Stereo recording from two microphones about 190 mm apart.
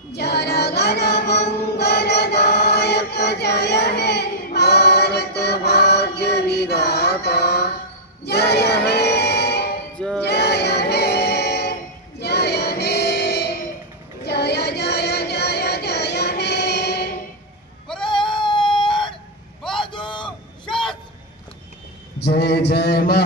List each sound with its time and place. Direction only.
0.1 s music: 60° left (ahead or behind)
9.9 s choir: 5° left (ahead or behind)
10.2 s music: 60° left (ahead or behind)
18.3 s a sound: 25° left (ahead or behind)
20.6 s a sound: 5° left (ahead or behind)
22.2 s mantra: 60° left (ahead or behind)